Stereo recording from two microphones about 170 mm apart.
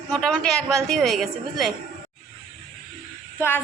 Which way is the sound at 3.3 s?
15° left (ahead or behind).